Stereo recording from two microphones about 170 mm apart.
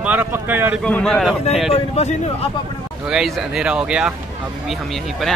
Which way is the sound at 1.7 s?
35° left (ahead or behind).